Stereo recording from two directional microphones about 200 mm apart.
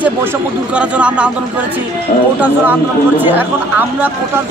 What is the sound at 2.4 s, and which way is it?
A man's voice, 10° right (ahead or behind).